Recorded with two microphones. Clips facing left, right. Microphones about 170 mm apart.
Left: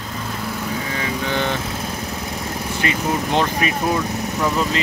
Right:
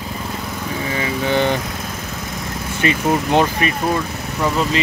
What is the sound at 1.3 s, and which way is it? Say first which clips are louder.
Speech: right 6 dB; 20° right (ahead or behind).